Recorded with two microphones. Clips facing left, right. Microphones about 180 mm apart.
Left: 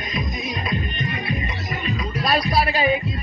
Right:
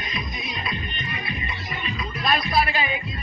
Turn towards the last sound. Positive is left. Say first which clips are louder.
# left 4 dB
turn(degrees=40)  # may be behind; listen again after turning